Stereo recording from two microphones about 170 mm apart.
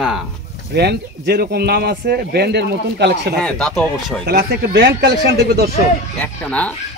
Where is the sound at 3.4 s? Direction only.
5° left (ahead or behind).